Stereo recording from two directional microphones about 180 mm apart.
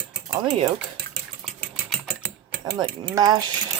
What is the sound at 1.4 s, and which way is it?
Typing, centre (ahead or behind).